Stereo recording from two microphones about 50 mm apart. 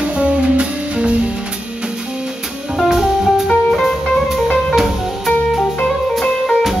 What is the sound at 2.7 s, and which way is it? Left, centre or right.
Music, centre.